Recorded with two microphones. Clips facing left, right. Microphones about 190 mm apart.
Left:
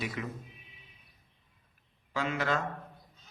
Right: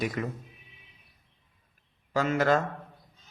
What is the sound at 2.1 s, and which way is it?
Speech, 45° right (ahead or behind).